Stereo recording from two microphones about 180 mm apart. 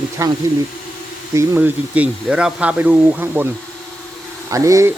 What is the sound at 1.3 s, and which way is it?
Speech, 15° right (ahead or behind).